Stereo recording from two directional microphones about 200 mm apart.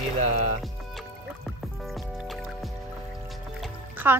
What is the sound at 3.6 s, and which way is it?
Music, 10° right (ahead or behind).